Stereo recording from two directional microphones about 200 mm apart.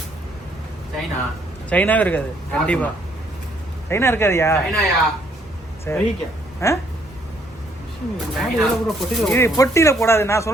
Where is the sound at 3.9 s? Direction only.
10° left (ahead or behind).